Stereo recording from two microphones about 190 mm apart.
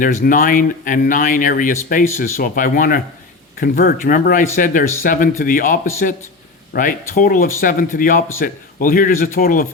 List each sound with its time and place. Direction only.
0.0 s speech: 45° left (ahead or behind)